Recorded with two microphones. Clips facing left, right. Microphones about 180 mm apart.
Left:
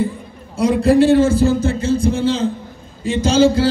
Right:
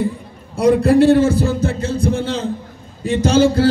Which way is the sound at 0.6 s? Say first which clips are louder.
Right 1 dB; 60° right (ahead or behind).